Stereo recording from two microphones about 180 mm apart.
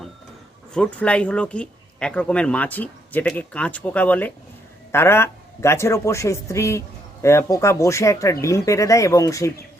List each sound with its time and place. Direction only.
0.7 s speech: 5° left (ahead or behind)